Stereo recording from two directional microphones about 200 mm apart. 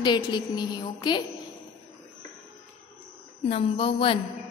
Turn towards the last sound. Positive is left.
turn(degrees=25)  # may be behind; listen again after turning